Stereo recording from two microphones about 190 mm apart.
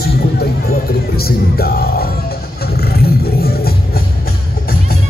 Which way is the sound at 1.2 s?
55° left (ahead or behind).